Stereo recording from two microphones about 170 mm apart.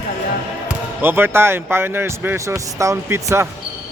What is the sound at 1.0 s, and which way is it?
Speech, 15° right (ahead or behind).